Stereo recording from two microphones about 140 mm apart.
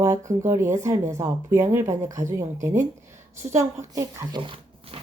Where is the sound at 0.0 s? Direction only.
20° right (ahead or behind).